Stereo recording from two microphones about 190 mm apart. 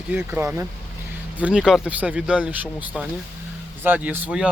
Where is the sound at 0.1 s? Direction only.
10° right (ahead or behind).